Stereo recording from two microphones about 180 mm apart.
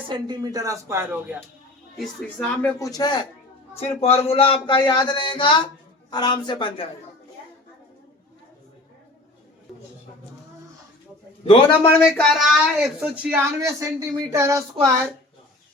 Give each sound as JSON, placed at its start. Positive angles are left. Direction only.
{"t": 0.1, "sound": "speech", "side_deg": -25}
{"t": 2.0, "sound": "speech", "side_deg": 5}
{"t": 4.0, "sound": "speech", "side_deg": 35}
{"t": 11.4, "sound": "a man's voice", "side_deg": 30}
{"t": 12.1, "sound": "speech", "side_deg": 0}